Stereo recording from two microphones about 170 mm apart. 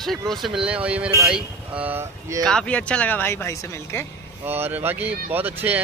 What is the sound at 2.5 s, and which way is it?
Speech, 5° left (ahead or behind).